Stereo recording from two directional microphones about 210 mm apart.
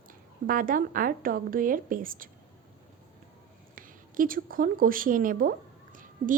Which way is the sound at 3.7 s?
40° right (ahead or behind).